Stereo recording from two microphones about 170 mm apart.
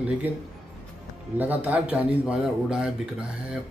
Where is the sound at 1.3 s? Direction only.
10° right (ahead or behind).